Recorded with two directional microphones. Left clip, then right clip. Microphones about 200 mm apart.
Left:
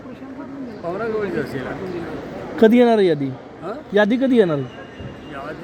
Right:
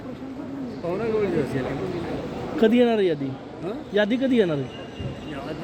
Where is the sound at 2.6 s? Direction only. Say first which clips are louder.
Left 6 dB; 45° left (ahead or behind).